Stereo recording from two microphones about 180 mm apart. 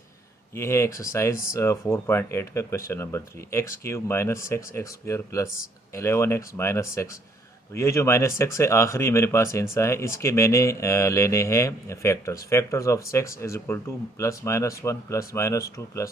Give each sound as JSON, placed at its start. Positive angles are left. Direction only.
{"t": 0.6, "sound": "speech", "side_deg": 15}